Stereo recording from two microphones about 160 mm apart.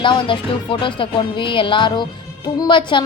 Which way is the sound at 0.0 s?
30° left (ahead or behind).